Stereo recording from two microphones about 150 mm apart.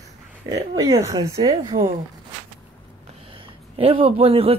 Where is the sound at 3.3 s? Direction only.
35° right (ahead or behind).